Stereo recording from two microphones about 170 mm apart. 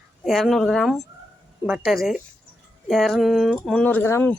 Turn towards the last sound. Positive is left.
turn(degrees=15)  # may be behind; listen again after turning